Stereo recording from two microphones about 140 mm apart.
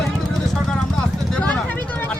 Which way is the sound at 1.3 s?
5° left (ahead or behind).